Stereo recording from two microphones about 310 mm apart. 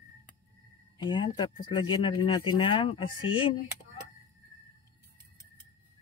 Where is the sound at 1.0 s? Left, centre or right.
Centre.